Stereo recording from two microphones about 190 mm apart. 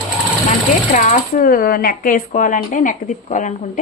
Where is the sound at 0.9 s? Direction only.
40° left (ahead or behind).